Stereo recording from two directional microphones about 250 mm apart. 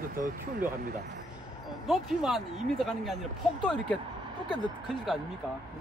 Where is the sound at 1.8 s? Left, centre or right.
Centre.